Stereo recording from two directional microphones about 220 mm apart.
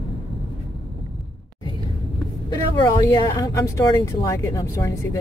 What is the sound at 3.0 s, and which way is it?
Speech, 15° left (ahead or behind).